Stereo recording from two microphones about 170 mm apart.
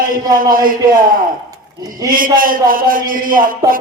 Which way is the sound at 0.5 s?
55° right (ahead or behind).